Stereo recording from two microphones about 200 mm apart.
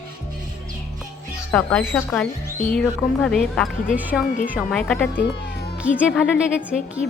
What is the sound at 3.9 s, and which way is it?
Speech, 5° right (ahead or behind).